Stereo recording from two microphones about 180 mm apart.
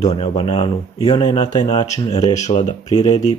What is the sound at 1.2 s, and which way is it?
Speech, 40° left (ahead or behind).